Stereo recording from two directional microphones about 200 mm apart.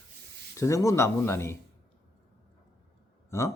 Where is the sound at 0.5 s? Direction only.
15° left (ahead or behind).